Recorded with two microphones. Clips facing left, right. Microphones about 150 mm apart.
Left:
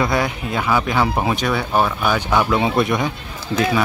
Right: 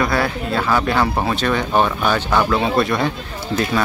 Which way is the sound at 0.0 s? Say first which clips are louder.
Right 1 dB; 15° left (ahead or behind).